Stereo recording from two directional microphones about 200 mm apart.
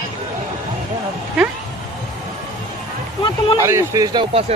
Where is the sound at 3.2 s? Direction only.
25° left (ahead or behind).